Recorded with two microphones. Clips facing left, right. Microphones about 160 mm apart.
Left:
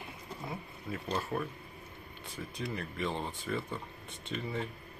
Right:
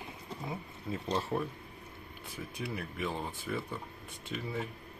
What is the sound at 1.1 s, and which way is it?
Speech, 15° right (ahead or behind).